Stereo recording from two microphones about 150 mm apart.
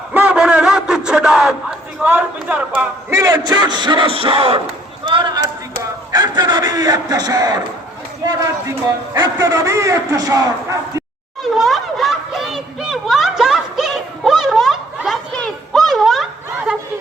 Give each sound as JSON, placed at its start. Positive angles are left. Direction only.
{"t": 0.1, "sound": "a sound", "side_deg": -10}
{"t": 2.0, "sound": "a man's voice", "side_deg": -10}
{"t": 5.0, "sound": "a sound", "side_deg": -30}
{"t": 6.1, "sound": "a man's voice", "side_deg": -25}
{"t": 8.2, "sound": "run", "side_deg": -25}
{"t": 9.1, "sound": "a man's voice", "side_deg": -25}
{"t": 11.4, "sound": "children playing", "side_deg": 0}